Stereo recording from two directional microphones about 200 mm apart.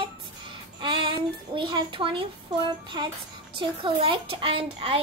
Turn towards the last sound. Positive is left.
turn(degrees=-30)  # may be behind; listen again after turning